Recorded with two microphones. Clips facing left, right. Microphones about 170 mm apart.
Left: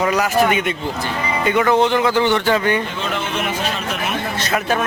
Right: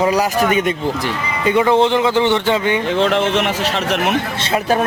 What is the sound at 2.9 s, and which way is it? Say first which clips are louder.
Speech: right 9 dB; 80° right.